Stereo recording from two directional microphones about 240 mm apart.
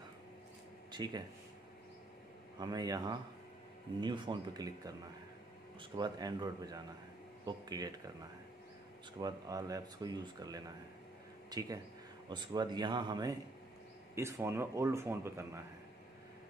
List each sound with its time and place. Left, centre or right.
0.9 s speech: centre
2.6 s a man's voice: centre